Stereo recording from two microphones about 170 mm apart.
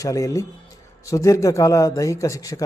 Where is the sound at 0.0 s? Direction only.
20° left (ahead or behind).